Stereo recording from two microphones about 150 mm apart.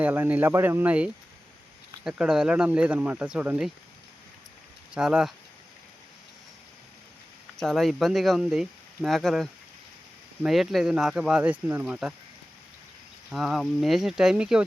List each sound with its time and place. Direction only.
0.0 s speech: 10° right (ahead or behind)
4.9 s speech: 5° right (ahead or behind)
7.6 s speech: centre (ahead or behind)
13.3 s speech: centre (ahead or behind)